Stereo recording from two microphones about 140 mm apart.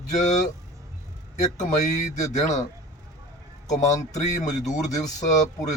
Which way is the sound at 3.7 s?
60° left (ahead or behind).